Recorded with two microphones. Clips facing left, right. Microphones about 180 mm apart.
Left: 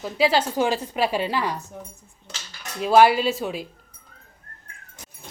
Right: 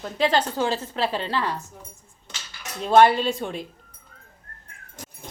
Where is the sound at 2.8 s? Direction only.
5° left (ahead or behind).